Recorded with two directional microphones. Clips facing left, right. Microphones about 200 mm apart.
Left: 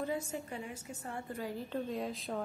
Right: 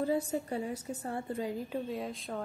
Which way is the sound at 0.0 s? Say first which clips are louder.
Right 6 dB; 35° right (ahead or behind).